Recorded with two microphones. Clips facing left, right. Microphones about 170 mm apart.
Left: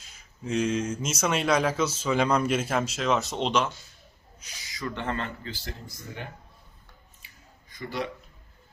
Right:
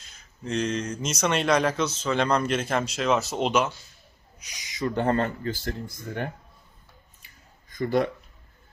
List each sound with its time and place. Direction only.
0.2 s speech: 5° left (ahead or behind)
4.4 s a sound: 15° right (ahead or behind)
4.9 s speech: 40° right (ahead or behind)
7.7 s speech: 50° right (ahead or behind)